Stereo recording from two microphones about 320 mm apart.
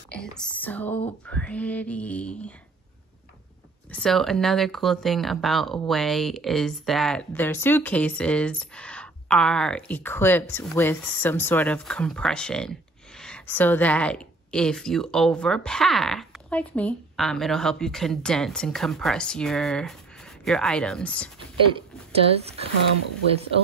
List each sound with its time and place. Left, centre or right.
0.1 s speech: centre
3.9 s speech: centre
22.4 s speech: centre